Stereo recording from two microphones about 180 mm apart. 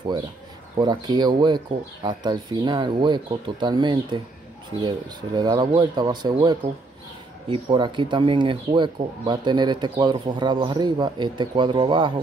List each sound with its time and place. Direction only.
0.7 s speech: 20° right (ahead or behind)